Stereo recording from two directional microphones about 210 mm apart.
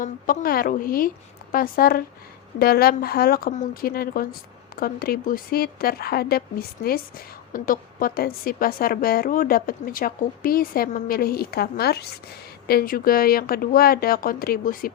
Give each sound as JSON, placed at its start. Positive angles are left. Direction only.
{"t": 0.0, "sound": "a woman's voice", "side_deg": 45}